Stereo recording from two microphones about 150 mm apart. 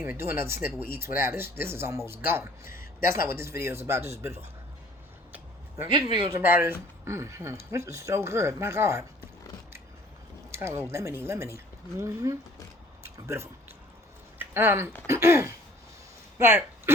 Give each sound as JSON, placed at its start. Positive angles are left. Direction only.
{"t": 0.0, "sound": "speech", "side_deg": -15}
{"t": 5.3, "sound": "a sound", "side_deg": -15}
{"t": 6.1, "sound": "speech", "side_deg": -40}
{"t": 6.3, "sound": "speech", "side_deg": -15}
{"t": 10.5, "sound": "speech", "side_deg": -20}
{"t": 13.0, "sound": "a sound", "side_deg": -20}
{"t": 15.0, "sound": "speech", "side_deg": -20}